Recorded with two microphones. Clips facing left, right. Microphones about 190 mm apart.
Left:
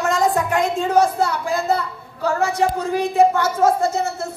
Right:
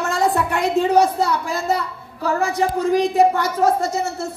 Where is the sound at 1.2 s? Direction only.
55° left (ahead or behind).